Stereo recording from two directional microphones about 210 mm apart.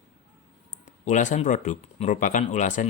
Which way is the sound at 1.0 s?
35° left (ahead or behind).